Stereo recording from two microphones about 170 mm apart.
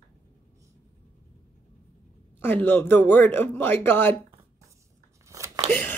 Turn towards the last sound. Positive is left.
turn(degrees=-20)  # may be behind; listen again after turning